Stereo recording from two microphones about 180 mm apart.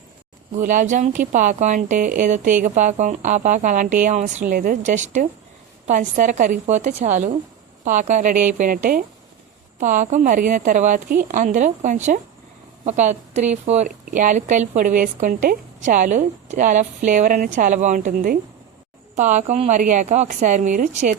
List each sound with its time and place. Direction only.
0.5 s speech: 45° right (ahead or behind)